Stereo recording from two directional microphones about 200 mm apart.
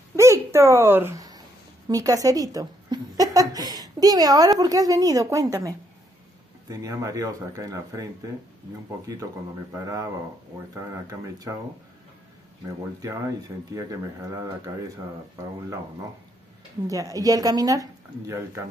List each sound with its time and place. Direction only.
0.1 s a sound: 15° right (ahead or behind)
1.9 s speech: 15° right (ahead or behind)
11.1 s speech: 15° right (ahead or behind)
13.5 s speech: 15° right (ahead or behind)
16.8 s speech: 15° right (ahead or behind)